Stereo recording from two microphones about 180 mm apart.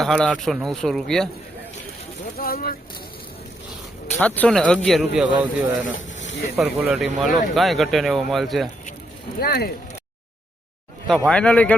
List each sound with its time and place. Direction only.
0.0 s speech: 5° left (ahead or behind)
2.4 s speech: 55° left (ahead or behind)
4.2 s speech: 10° left (ahead or behind)
9.4 s speech: 60° left (ahead or behind)
11.3 s speech: 5° left (ahead or behind)